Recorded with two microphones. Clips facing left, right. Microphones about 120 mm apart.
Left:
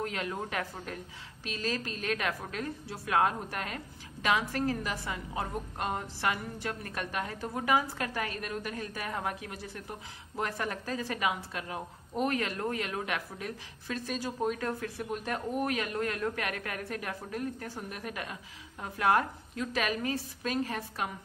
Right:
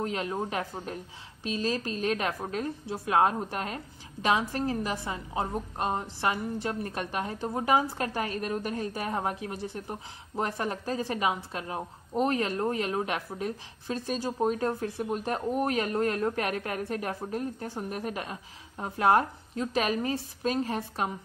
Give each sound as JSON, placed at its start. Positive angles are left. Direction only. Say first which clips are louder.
{"t": 0.0, "sound": "a woman's voice", "louder": "right 4 dB", "side_deg": -30}